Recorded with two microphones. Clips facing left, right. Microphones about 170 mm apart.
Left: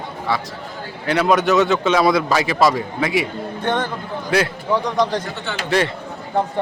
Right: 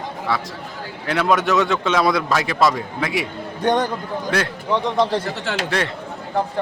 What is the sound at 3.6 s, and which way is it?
Speech, 15° right (ahead or behind).